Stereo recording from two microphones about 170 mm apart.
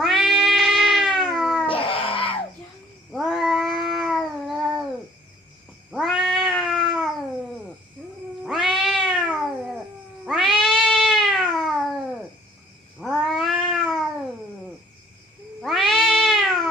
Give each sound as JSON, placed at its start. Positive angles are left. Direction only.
{"t": 0.0, "sound": "cat", "side_deg": 0}
{"t": 1.6, "sound": "a sound", "side_deg": 30}
{"t": 3.1, "sound": "cat", "side_deg": 0}
{"t": 5.9, "sound": "cat", "side_deg": 0}
{"t": 13.0, "sound": "cat", "side_deg": 0}
{"t": 15.6, "sound": "cat", "side_deg": 0}